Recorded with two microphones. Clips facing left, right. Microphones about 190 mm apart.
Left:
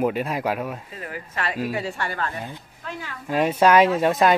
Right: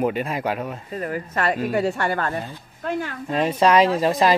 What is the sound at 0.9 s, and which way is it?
A woman's voice, 45° right (ahead or behind).